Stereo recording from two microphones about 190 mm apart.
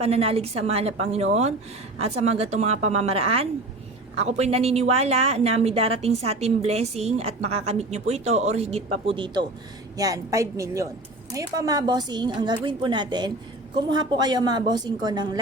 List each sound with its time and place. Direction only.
0.0 s a woman's voice: 30° right (ahead or behind)